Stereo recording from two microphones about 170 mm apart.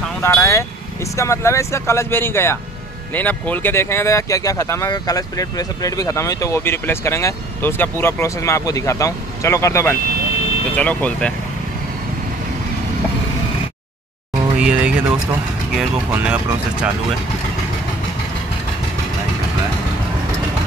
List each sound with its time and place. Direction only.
0.2 s speech: 15° left (ahead or behind)
14.6 s speech: 5° right (ahead or behind)